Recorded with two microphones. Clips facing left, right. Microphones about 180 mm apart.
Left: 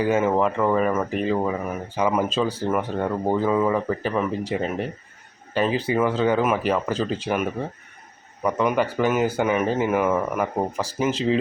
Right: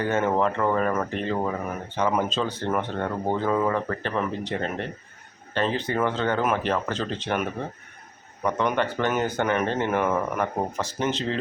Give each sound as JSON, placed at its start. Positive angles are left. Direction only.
{"t": 0.0, "sound": "speech", "side_deg": 10}
{"t": 8.4, "sound": "speech", "side_deg": 5}